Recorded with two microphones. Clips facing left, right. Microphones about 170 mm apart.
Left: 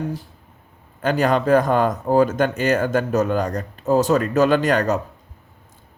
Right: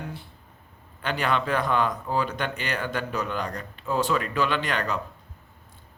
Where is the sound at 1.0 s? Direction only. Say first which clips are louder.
Left 8 dB; 40° left (ahead or behind).